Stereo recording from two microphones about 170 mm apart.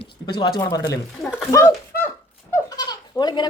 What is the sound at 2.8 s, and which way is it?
Goat, 25° left (ahead or behind).